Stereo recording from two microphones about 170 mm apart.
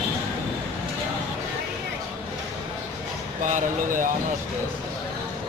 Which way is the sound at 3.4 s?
50° right (ahead or behind).